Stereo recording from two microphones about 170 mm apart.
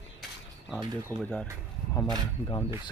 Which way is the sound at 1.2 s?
5° left (ahead or behind).